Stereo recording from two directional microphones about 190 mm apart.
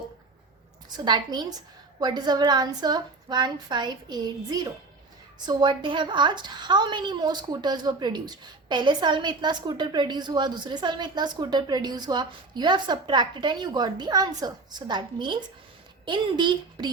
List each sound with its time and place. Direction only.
0.9 s a woman's voice: 20° right (ahead or behind)